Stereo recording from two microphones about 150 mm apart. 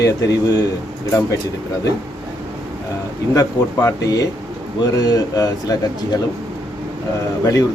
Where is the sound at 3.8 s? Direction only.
25° left (ahead or behind).